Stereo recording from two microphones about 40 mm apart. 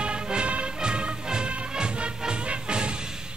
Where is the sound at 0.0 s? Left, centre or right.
Right.